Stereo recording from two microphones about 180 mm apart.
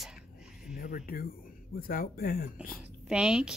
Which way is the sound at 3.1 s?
5° right (ahead or behind).